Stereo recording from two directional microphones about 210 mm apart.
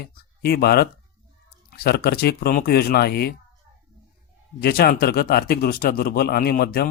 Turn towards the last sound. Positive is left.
turn(degrees=45)  # may be behind; listen again after turning